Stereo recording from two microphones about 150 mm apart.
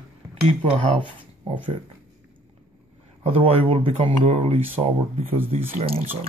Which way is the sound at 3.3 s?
40° right (ahead or behind).